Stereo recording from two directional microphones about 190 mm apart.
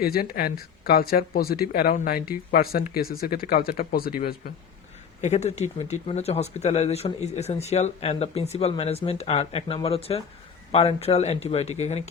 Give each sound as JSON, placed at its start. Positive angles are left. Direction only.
{"t": 0.0, "sound": "speech", "side_deg": 50}
{"t": 5.2, "sound": "speech", "side_deg": 35}